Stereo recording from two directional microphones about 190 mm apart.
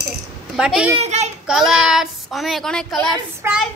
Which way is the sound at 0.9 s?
35° right (ahead or behind).